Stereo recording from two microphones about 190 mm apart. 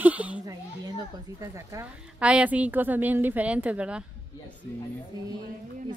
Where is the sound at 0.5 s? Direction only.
20° right (ahead or behind).